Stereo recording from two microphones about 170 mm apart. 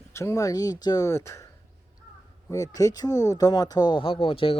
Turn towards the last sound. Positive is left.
turn(degrees=35)  # may be behind; listen again after turning